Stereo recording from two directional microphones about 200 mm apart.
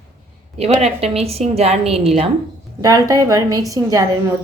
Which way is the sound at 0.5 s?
30° right (ahead or behind).